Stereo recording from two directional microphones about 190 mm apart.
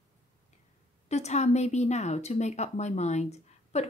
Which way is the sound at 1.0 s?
35° left (ahead or behind).